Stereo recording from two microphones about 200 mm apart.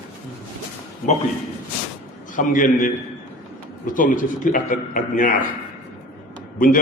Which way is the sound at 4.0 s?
40° left (ahead or behind).